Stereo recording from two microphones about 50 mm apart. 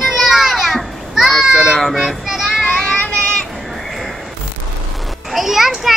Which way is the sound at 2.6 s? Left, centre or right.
Left.